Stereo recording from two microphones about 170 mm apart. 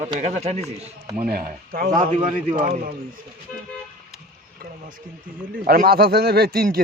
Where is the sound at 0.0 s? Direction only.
40° right (ahead or behind).